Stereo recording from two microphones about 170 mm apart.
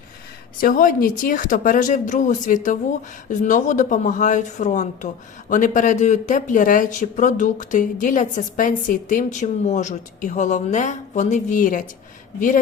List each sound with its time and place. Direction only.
0.6 s speech: 55° left (ahead or behind)